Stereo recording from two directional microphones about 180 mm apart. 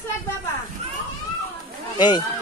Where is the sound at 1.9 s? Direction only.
25° left (ahead or behind).